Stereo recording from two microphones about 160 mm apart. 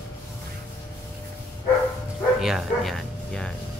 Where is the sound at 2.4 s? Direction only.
Centre (ahead or behind).